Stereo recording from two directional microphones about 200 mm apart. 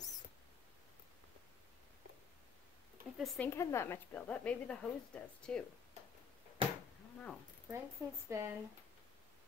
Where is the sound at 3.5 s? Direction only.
15° left (ahead or behind).